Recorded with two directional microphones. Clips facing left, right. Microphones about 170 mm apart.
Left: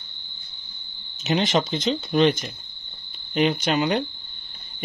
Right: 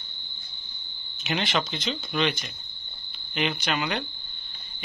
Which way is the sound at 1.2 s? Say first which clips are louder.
Left 6 dB; 40° left (ahead or behind).